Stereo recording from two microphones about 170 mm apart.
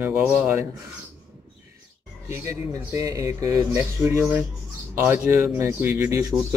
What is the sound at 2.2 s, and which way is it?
Speech, 15° right (ahead or behind).